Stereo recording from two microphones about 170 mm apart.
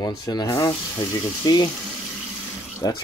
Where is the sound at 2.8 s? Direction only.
25° left (ahead or behind).